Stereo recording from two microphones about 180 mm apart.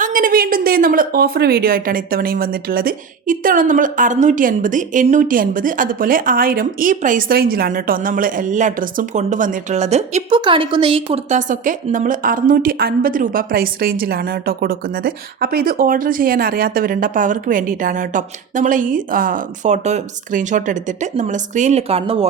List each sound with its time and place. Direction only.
0.0 s a woman's voice: 50° right (ahead or behind); by 22.3 s 35° right (ahead or behind)